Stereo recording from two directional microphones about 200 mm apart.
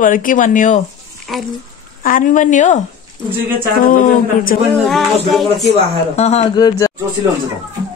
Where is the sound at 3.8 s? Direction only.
45° left (ahead or behind).